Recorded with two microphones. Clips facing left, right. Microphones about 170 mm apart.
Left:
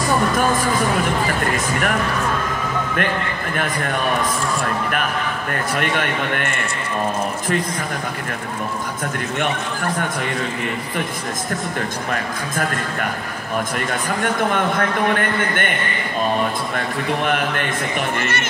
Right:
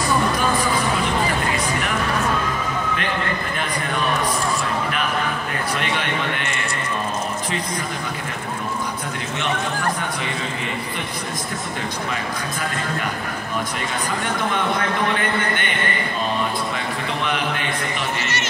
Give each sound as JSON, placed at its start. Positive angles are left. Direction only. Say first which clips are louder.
{"t": 5.8, "sound": "a man's voice", "louder": "left 4 dB", "side_deg": 50}
{"t": 14.0, "sound": "a man's voice", "louder": "left 4 dB", "side_deg": 55}
{"t": 16.7, "sound": "a man's voice", "louder": "left 4 dB", "side_deg": 50}